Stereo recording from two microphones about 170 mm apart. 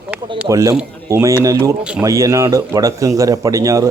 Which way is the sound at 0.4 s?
20° right (ahead or behind).